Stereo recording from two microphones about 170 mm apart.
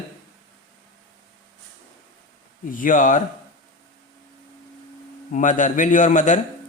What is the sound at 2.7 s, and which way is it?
Speech, 50° left (ahead or behind).